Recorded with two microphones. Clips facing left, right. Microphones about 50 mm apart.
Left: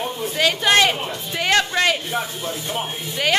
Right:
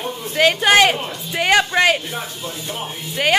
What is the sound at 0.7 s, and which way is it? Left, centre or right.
A man's voice, centre.